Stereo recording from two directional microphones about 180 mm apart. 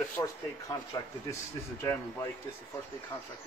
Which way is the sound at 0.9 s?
20° left (ahead or behind).